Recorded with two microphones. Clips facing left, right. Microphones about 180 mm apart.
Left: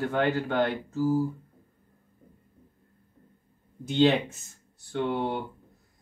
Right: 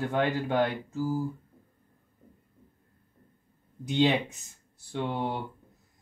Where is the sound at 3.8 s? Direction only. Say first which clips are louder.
Left 3 dB; 15° right (ahead or behind).